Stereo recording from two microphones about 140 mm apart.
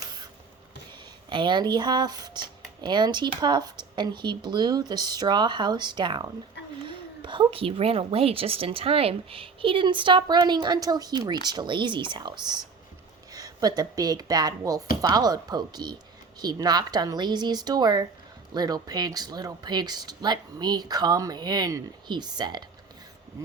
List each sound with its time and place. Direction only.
1.3 s a woman's voice: 35° right (ahead or behind)